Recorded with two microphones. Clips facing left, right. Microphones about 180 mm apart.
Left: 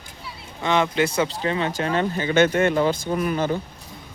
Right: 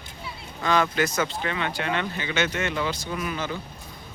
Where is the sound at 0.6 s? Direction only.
25° left (ahead or behind); by 3.6 s 45° left (ahead or behind).